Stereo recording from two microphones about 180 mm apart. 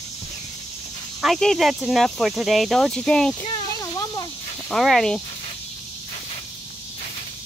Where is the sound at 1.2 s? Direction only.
Centre (ahead or behind).